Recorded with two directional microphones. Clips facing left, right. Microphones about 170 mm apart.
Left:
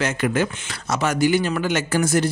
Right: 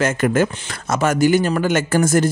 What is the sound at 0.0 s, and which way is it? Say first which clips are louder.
Speech: right 4 dB; 45° right (ahead or behind).